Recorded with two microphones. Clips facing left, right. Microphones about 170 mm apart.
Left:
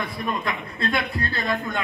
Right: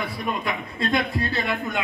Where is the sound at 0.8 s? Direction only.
15° right (ahead or behind).